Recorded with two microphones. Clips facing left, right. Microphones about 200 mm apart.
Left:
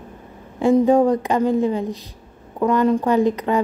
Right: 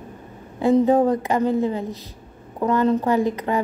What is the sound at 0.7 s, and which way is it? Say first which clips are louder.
A woman's voice: left 2 dB; 15° left (ahead or behind).